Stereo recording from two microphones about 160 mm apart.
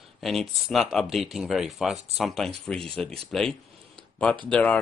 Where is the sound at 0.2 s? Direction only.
Centre (ahead or behind).